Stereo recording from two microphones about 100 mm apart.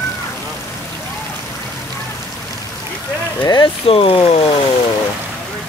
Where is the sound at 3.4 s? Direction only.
55° left (ahead or behind); by 4.4 s 70° left (ahead or behind).